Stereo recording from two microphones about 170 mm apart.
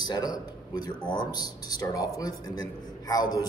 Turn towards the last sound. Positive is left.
turn(degrees=25)  # may be behind; listen again after turning